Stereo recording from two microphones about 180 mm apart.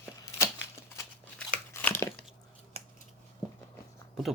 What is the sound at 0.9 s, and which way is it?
Scissors, 10° left (ahead or behind).